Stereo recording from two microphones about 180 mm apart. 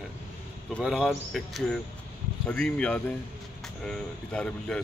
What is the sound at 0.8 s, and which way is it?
Speech, 5° right (ahead or behind).